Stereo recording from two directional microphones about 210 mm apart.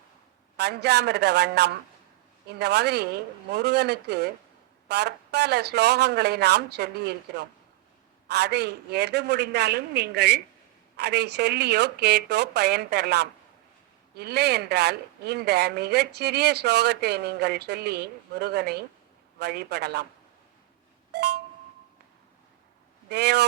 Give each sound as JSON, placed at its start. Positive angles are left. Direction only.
{"t": 0.5, "sound": "speech", "side_deg": -50}
{"t": 21.1, "sound": "a sound", "side_deg": -50}
{"t": 23.0, "sound": "speech", "side_deg": -55}